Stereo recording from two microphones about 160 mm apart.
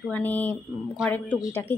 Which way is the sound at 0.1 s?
10° left (ahead or behind).